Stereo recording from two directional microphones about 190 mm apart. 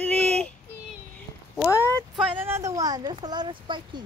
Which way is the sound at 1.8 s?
15° right (ahead or behind).